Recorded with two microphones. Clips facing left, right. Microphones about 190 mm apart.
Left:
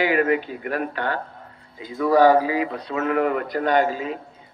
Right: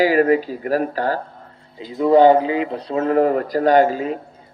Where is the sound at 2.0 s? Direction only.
25° right (ahead or behind).